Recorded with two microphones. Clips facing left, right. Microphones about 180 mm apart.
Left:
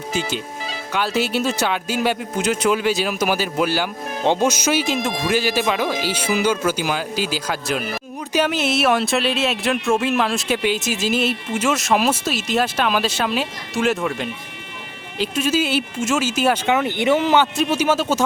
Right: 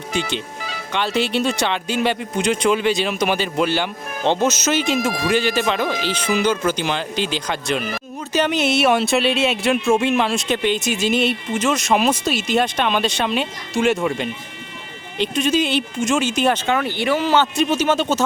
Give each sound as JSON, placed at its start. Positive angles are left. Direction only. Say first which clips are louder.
{"t": 0.1, "sound": "speech", "louder": "right 1 dB", "side_deg": 5}
{"t": 16.7, "sound": "speech", "louder": "left 2 dB", "side_deg": 20}